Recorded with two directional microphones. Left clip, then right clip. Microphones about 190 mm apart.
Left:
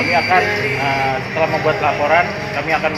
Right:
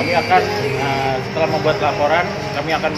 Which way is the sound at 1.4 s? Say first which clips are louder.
Left 1 dB; 10° right (ahead or behind).